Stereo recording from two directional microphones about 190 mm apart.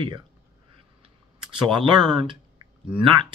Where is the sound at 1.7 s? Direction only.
25° right (ahead or behind).